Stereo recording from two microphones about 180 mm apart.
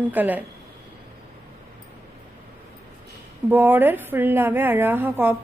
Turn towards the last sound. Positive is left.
turn(degrees=-10)  # may be behind; listen again after turning